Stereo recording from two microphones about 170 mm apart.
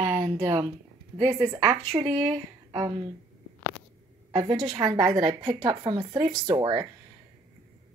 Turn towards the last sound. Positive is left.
turn(degrees=-25)  # may be behind; listen again after turning